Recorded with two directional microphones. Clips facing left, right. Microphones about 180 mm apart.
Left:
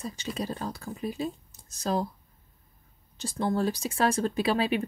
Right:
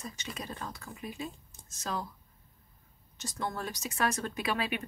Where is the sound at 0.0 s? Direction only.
30° left (ahead or behind).